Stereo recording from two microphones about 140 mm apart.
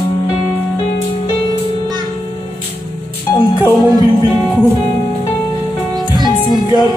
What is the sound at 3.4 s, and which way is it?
Music, 30° left (ahead or behind).